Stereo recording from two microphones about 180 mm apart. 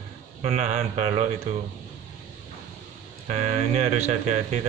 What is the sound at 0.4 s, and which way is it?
Speech, 40° right (ahead or behind).